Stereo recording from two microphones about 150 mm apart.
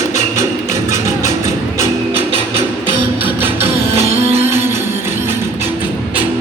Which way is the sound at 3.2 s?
15° right (ahead or behind).